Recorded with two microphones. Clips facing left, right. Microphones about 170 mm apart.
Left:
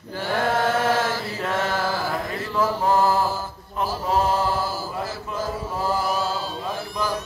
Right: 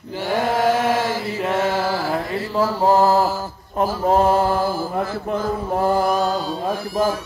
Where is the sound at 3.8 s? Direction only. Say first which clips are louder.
Right 6 dB; 50° right (ahead or behind).